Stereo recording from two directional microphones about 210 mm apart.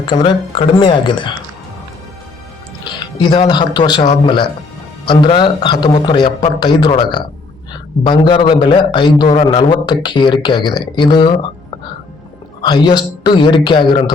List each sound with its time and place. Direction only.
0.0 s speech: 25° left (ahead or behind)
3.2 s speech: 20° left (ahead or behind)